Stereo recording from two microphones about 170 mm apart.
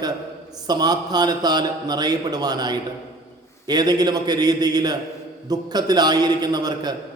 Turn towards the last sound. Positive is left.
turn(degrees=-25)  # may be behind; listen again after turning